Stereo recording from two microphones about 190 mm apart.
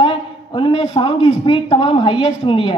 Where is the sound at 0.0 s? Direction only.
25° left (ahead or behind).